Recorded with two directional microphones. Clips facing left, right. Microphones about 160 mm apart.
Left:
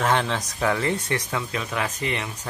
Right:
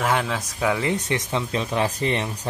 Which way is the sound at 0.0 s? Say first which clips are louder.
Even; 5° right (ahead or behind).